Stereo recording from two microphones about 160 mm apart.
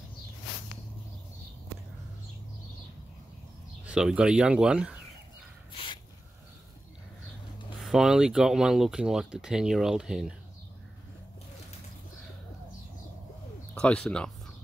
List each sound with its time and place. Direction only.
3.8 s speech: 5° right (ahead or behind)
7.8 s speech: 5° right (ahead or behind)
13.7 s speech: 5° left (ahead or behind)